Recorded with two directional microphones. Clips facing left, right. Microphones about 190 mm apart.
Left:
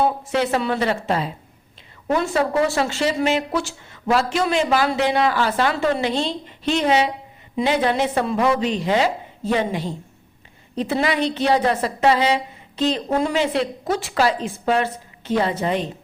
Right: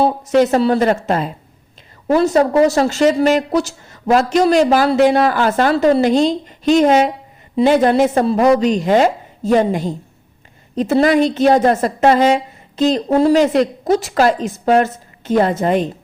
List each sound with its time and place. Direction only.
0.0 s speech: 40° right (ahead or behind)